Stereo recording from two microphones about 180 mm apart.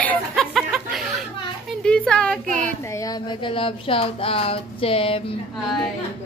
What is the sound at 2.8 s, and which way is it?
Speech, 20° left (ahead or behind).